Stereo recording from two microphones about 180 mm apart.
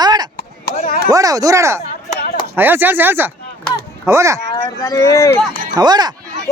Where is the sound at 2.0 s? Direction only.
50° left (ahead or behind).